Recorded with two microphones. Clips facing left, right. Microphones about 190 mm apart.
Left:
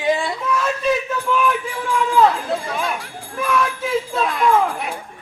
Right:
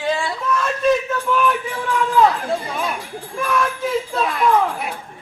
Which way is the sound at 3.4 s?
Centre (ahead or behind).